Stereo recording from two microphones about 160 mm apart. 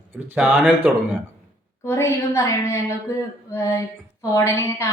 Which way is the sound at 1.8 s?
15° left (ahead or behind).